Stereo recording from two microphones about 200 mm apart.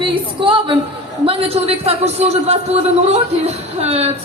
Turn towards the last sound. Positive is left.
turn(degrees=-30)  # may be behind; listen again after turning